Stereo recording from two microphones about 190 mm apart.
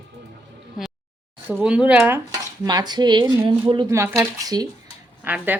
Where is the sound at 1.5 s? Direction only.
5° right (ahead or behind).